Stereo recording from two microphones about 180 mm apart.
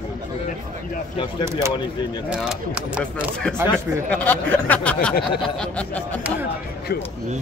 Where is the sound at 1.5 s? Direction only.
15° right (ahead or behind).